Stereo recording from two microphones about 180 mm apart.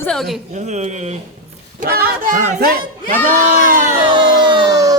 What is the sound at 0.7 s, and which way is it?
Speech, 40° right (ahead or behind).